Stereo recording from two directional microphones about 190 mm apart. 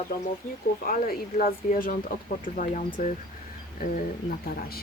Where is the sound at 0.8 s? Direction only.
50° left (ahead or behind).